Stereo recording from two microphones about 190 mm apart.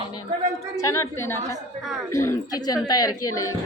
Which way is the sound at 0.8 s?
15° left (ahead or behind).